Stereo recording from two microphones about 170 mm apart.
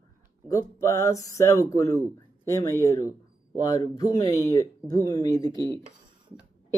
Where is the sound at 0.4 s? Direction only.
20° left (ahead or behind).